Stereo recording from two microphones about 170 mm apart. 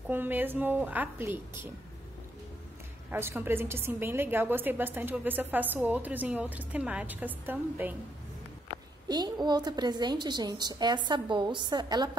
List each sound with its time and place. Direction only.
0.1 s a woman's voice: 10° right (ahead or behind)
3.1 s a woman's voice: 10° right (ahead or behind)
9.1 s a woman's voice: 25° right (ahead or behind)